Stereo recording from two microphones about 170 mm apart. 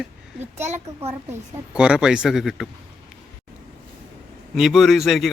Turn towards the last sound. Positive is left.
turn(degrees=0)  # may be behind; listen again after turning